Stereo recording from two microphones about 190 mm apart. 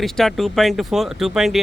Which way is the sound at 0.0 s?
Centre (ahead or behind).